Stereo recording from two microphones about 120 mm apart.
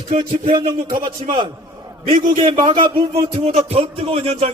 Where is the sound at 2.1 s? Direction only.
90° right.